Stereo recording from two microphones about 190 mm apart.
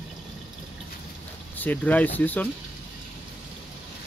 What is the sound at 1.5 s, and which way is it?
Speech, 10° left (ahead or behind).